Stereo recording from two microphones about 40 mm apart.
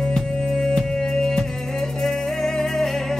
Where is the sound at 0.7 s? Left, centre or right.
Centre.